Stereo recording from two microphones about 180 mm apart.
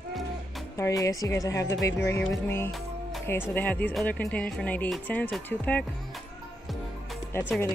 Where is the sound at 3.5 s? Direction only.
10° left (ahead or behind).